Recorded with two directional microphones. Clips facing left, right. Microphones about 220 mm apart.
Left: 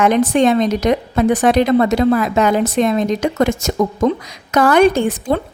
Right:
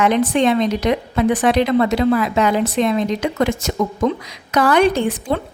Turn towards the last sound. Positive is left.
turn(degrees=45)  # may be behind; listen again after turning